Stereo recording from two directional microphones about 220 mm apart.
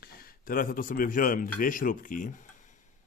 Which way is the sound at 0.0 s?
45° left (ahead or behind).